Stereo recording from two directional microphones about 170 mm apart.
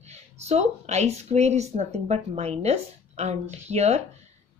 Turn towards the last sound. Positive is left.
turn(degrees=-40)  # may be behind; listen again after turning